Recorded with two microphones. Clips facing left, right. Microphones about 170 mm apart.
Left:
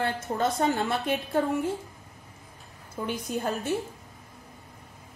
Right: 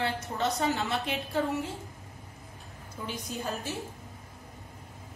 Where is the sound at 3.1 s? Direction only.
55° left (ahead or behind).